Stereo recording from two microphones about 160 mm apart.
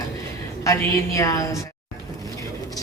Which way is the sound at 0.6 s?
20° left (ahead or behind).